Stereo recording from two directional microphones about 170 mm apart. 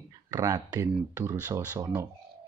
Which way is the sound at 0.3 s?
20° right (ahead or behind).